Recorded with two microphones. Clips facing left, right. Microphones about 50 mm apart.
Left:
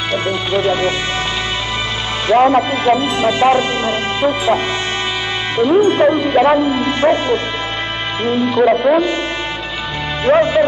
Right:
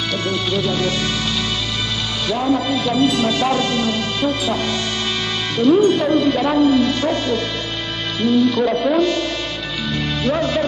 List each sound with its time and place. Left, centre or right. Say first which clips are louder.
0.1 s speech: left 5 dB; left
2.2 s speech: left 8 dB; left
5.6 s speech: left 2 dB; left
10.3 s speech: left 9 dB; left